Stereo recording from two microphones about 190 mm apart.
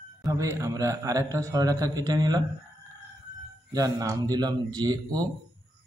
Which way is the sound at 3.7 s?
20° right (ahead or behind).